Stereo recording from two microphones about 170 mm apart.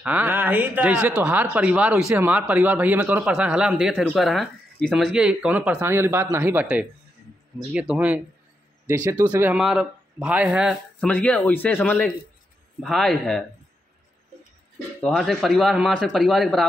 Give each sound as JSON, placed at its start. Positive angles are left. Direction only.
{"t": 0.0, "sound": "speech", "side_deg": -10}
{"t": 8.8, "sound": "speech", "side_deg": -20}
{"t": 9.2, "sound": "speech", "side_deg": -10}
{"t": 15.0, "sound": "speech", "side_deg": 5}